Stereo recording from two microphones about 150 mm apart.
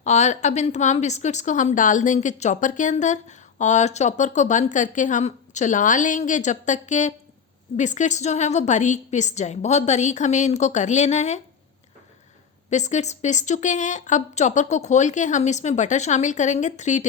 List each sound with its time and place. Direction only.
0.0 s a woman's voice: 50° left (ahead or behind)
12.7 s a woman's voice: 50° left (ahead or behind)